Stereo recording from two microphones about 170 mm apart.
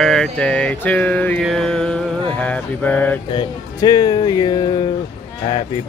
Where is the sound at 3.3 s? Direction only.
25° left (ahead or behind).